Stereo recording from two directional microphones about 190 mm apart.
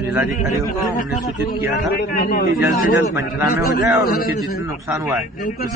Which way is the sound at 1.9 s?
50° left (ahead or behind).